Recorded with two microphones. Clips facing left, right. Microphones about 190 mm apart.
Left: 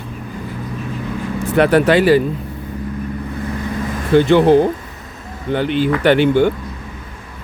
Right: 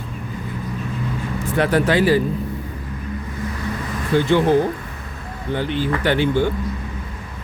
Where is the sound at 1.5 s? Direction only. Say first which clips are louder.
Left 5 dB; 70° left (ahead or behind).